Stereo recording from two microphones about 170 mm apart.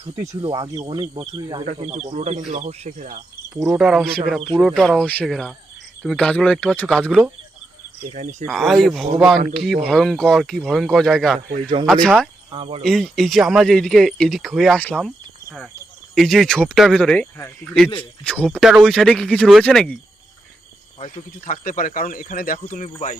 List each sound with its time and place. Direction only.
0.4 s speech: 25° right (ahead or behind)
1.6 s speech: 40° right (ahead or behind)
3.5 s speech: 5° right (ahead or behind)
8.1 s speech: 45° right (ahead or behind)
8.4 s speech: centre (ahead or behind)
12.5 s speech: 35° right (ahead or behind)
12.8 s speech: centre (ahead or behind)
16.1 s speech: centre (ahead or behind)
21.0 s speech: 50° left (ahead or behind)